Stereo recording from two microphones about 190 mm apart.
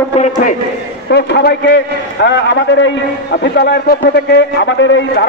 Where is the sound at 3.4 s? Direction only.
60° left (ahead or behind).